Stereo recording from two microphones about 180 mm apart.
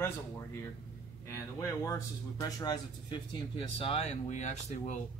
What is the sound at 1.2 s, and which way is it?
Speech, 15° left (ahead or behind).